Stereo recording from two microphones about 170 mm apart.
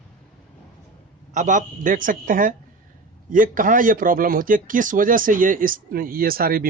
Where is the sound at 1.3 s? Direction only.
45° right (ahead or behind).